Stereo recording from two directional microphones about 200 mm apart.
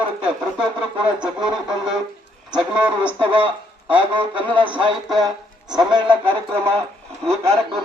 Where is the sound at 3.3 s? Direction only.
25° right (ahead or behind).